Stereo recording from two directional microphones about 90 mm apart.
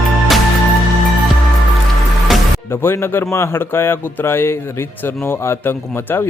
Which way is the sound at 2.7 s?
25° left (ahead or behind).